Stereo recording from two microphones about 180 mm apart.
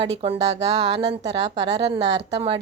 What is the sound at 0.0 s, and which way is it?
Speech, 30° right (ahead or behind).